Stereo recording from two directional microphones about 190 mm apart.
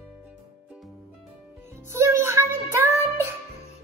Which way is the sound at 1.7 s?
15° right (ahead or behind).